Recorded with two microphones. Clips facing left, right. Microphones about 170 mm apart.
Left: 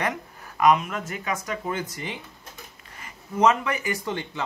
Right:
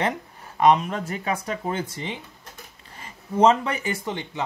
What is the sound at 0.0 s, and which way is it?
Speech, 30° right (ahead or behind).